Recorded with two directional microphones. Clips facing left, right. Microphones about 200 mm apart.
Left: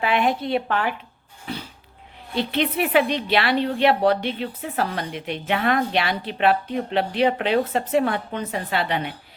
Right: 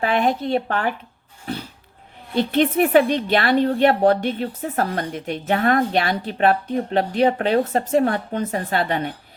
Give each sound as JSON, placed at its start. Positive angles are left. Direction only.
{"t": 0.0, "sound": "a woman's voice", "side_deg": -45}
{"t": 2.3, "sound": "a woman's voice", "side_deg": -45}